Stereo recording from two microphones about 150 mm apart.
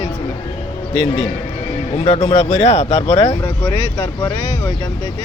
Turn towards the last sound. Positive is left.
turn(degrees=25)  # may be behind; listen again after turning